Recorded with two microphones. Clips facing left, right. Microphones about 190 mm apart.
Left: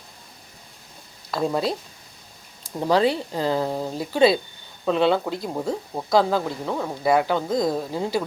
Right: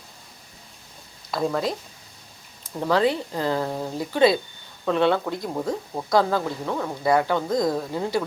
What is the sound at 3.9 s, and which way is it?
Speech, 25° left (ahead or behind).